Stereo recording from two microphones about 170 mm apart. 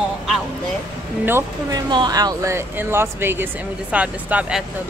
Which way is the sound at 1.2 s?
15° right (ahead or behind).